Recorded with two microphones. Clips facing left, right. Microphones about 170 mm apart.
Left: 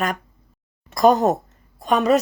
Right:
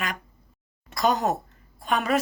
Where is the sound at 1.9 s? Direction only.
40° left (ahead or behind).